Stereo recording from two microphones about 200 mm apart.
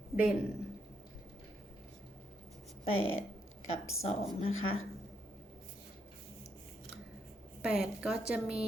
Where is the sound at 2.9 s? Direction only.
30° left (ahead or behind).